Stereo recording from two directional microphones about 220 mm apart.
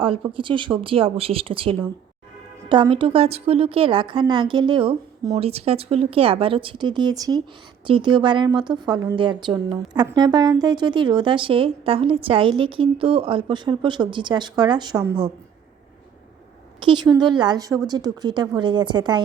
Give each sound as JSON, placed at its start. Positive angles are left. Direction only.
{"t": 0.0, "sound": "a woman's voice", "side_deg": -25}
{"t": 16.8, "sound": "a woman's voice", "side_deg": -20}